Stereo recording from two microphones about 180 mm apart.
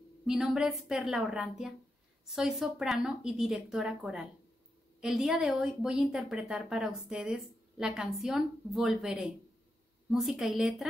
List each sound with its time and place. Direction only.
0.3 s speech: 5° right (ahead or behind)